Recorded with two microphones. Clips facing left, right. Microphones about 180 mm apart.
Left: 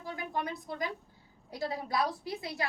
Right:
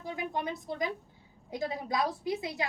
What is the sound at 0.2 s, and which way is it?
A woman's voice, 20° right (ahead or behind).